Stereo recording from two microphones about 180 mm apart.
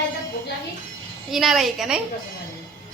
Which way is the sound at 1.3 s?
Centre (ahead or behind).